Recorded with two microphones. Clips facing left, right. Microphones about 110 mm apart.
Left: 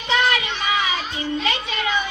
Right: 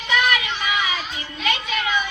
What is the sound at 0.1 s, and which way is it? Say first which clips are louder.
Child singing: left 1 dB; 30° left (ahead or behind).